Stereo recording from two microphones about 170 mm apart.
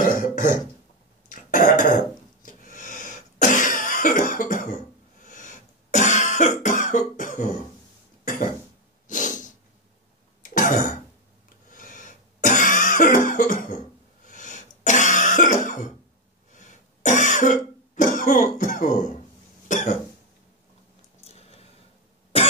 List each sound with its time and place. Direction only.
0.0 s throat clearing: 50° left (ahead or behind)
5.3 s cough: 45° left (ahead or behind)
9.0 s snort: 50° left (ahead or behind)
10.5 s throat clearing: 50° left (ahead or behind)
11.7 s cough: 50° left (ahead or behind)
14.2 s throat clearing: 45° left (ahead or behind)
19.7 s cough: 45° left (ahead or behind)
21.2 s a sound: 35° left (ahead or behind)